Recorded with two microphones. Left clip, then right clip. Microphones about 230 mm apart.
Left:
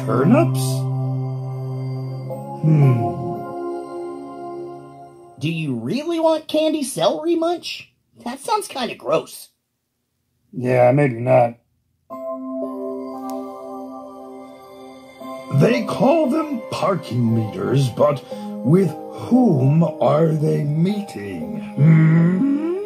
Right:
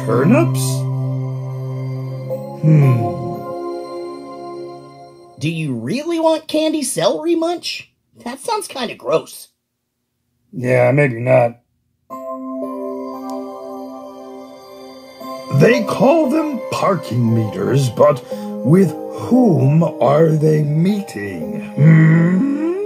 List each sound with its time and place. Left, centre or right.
0.0 s music: right
5.4 s speech: right
10.7 s speech: right
12.1 s music: right